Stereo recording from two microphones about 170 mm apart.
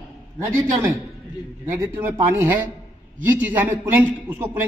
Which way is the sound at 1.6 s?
10° right (ahead or behind).